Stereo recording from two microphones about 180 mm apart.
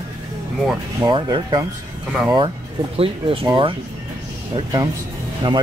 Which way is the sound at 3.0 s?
30° right (ahead or behind).